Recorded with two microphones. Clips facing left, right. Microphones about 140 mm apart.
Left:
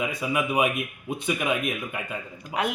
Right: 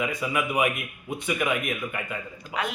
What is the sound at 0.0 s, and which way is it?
Speech, 20° left (ahead or behind).